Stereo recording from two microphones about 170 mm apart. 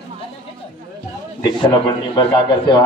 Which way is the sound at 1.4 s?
25° left (ahead or behind).